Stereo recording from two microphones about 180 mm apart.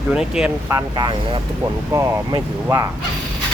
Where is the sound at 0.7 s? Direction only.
25° right (ahead or behind).